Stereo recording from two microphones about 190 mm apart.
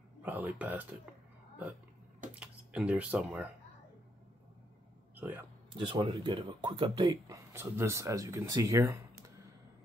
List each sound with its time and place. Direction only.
0.2 s speech: 10° right (ahead or behind)
2.3 s speech: 5° right (ahead or behind)
5.1 s a sound: 10° right (ahead or behind)
5.8 s speech: 25° right (ahead or behind)